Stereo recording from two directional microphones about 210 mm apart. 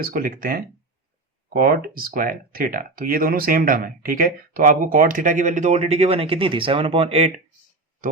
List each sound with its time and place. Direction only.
0.0 s speech: 45° right (ahead or behind)